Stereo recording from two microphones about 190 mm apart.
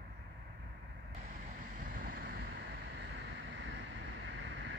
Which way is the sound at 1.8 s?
50° right (ahead or behind).